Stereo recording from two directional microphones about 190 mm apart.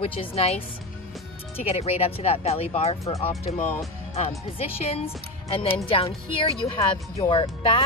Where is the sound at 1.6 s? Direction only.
30° left (ahead or behind).